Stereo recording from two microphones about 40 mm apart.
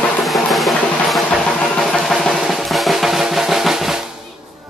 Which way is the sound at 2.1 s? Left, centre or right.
Centre.